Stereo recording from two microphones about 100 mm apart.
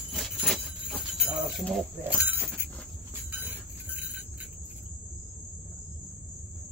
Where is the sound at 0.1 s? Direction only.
5° left (ahead or behind).